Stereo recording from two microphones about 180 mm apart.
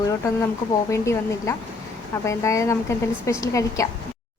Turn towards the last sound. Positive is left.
turn(degrees=15)  # may be behind; listen again after turning